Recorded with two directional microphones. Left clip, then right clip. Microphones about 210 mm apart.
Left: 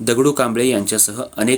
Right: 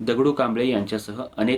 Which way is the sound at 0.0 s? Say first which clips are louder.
Left 5 dB; 45° left (ahead or behind).